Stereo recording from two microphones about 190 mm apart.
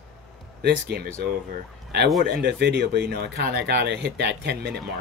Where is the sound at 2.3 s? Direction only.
60° right (ahead or behind).